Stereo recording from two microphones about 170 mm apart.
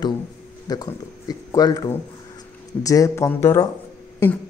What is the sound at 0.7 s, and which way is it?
Speech, 20° left (ahead or behind).